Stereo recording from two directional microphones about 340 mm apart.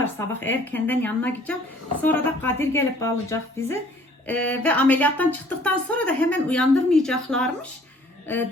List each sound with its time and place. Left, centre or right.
0.0 s speech: centre